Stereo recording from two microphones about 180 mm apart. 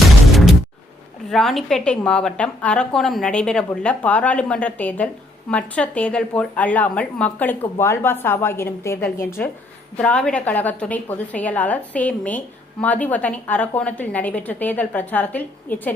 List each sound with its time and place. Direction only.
1.3 s a woman's voice: centre (ahead or behind)